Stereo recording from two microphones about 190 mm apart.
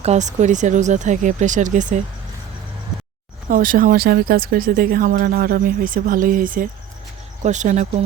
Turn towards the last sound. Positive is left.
turn(degrees=-40)  # may be behind; listen again after turning